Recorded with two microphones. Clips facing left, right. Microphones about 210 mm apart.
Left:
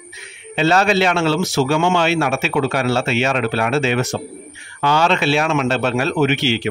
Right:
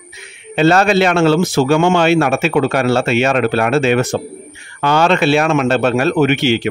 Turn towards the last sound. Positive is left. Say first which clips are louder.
# right 4 dB
turn(degrees=-50)  # may be behind; listen again after turning